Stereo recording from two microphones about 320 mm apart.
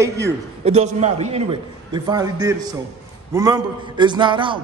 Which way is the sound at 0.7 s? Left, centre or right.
Right.